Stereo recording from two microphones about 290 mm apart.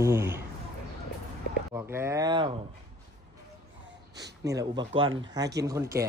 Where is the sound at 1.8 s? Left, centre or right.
Centre.